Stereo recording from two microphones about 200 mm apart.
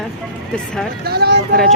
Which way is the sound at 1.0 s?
55° right (ahead or behind).